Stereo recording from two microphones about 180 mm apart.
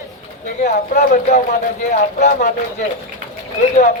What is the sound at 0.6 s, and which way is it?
Speech, 45° left (ahead or behind).